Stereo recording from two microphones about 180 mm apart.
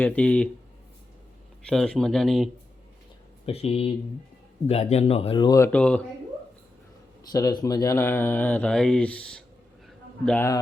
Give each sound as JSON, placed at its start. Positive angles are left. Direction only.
{"t": 0.0, "sound": "speech", "side_deg": 10}
{"t": 1.7, "sound": "speech", "side_deg": 5}
{"t": 3.4, "sound": "speech", "side_deg": 35}
{"t": 7.3, "sound": "speech", "side_deg": 20}
{"t": 9.8, "sound": "a sound", "side_deg": 5}